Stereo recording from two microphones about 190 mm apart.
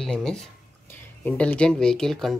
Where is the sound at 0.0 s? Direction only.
5° left (ahead or behind).